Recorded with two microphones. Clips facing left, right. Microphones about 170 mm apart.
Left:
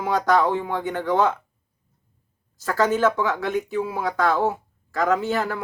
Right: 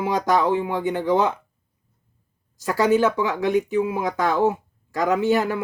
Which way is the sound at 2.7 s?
15° right (ahead or behind).